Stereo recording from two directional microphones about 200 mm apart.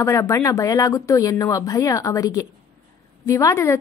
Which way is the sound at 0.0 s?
15° left (ahead or behind).